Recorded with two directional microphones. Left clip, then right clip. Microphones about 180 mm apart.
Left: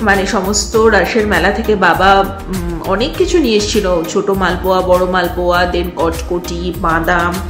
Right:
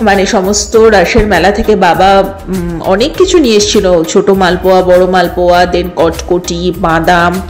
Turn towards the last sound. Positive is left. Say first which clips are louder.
# right 5 dB
turn(degrees=-40)  # may be behind; listen again after turning